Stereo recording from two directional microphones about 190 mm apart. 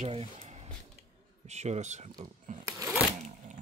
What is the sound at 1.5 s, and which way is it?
Speech, 35° right (ahead or behind).